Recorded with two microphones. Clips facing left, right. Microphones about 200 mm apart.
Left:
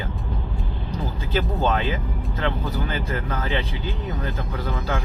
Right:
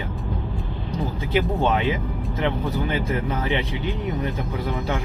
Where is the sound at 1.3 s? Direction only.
15° right (ahead or behind).